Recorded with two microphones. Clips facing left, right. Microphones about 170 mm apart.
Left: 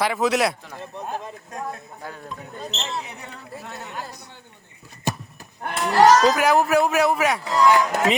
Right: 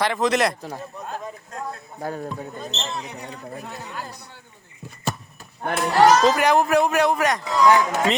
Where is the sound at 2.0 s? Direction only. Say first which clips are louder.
Right 8 dB; 45° right (ahead or behind).